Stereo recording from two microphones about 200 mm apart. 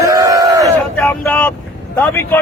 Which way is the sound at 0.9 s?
10° left (ahead or behind).